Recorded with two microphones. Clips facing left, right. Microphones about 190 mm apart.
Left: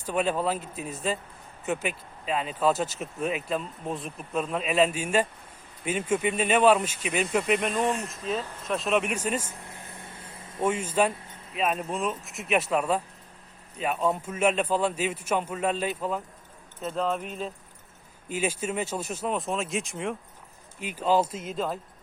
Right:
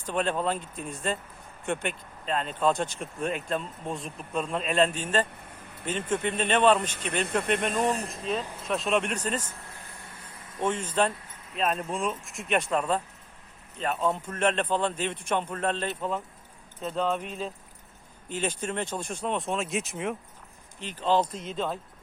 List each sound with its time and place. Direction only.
0.0 s a man's voice: 5° left (ahead or behind)
7.8 s speech: 35° right (ahead or behind)
8.1 s speech: centre (ahead or behind)
9.6 s a sound: 20° left (ahead or behind)
10.6 s a man's voice: 10° left (ahead or behind)
20.7 s a man's voice: 10° left (ahead or behind)